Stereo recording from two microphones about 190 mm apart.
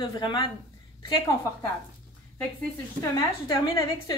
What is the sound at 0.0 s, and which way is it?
Speech, 25° left (ahead or behind).